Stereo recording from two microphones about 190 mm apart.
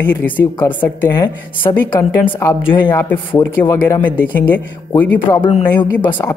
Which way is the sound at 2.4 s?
10° left (ahead or behind).